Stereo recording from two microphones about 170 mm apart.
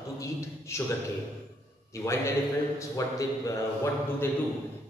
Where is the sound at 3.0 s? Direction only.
20° left (ahead or behind).